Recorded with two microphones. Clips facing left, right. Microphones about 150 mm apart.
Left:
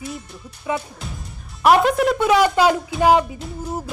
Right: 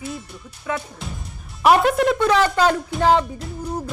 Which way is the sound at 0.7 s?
20° left (ahead or behind).